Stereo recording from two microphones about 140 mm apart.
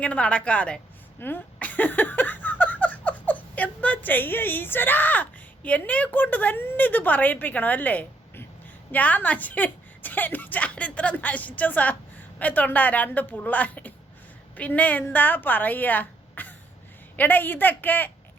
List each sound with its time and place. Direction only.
0.0 s a woman's voice: 10° left (ahead or behind)
1.2 s a sound: 10° left (ahead or behind)
8.9 s a woman's voice: 10° left (ahead or behind)